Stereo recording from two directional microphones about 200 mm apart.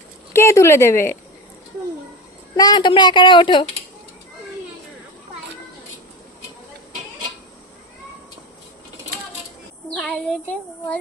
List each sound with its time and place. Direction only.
0.3 s speech: 15° left (ahead or behind)
2.6 s a woman's voice: 20° left (ahead or behind)
9.9 s speech: 5° left (ahead or behind)